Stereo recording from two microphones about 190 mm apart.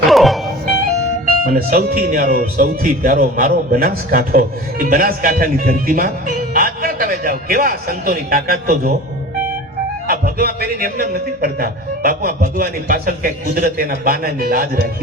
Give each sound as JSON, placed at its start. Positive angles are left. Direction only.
{"t": 0.1, "sound": "music", "side_deg": 0}
{"t": 1.5, "sound": "speech", "side_deg": -50}
{"t": 10.1, "sound": "speech", "side_deg": -50}